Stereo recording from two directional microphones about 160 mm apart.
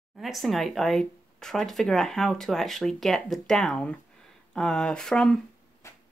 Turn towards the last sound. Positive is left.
turn(degrees=15)  # may be behind; listen again after turning